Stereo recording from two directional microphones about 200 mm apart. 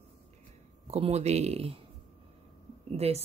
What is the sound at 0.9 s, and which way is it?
Speech, 30° right (ahead or behind).